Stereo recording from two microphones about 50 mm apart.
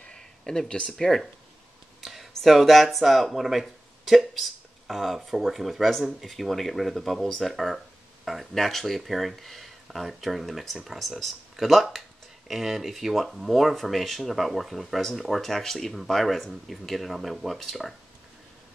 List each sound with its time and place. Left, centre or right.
0.0 s a sound: centre
1.0 s speech: centre
7.5 s speech: centre